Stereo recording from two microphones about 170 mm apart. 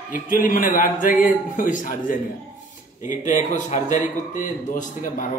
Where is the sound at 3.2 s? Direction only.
45° left (ahead or behind).